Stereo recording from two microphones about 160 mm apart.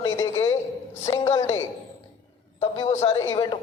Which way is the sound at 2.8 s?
20° left (ahead or behind).